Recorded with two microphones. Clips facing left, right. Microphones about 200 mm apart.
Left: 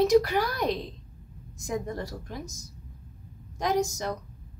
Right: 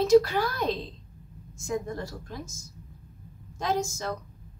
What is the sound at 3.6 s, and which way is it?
Speech, 15° left (ahead or behind).